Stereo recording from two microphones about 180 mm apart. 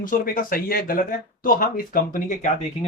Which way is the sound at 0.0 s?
50° left (ahead or behind).